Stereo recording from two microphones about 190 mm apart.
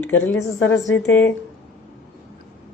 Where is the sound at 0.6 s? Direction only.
85° left.